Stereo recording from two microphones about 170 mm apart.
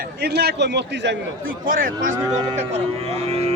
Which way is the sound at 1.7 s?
55° right (ahead or behind).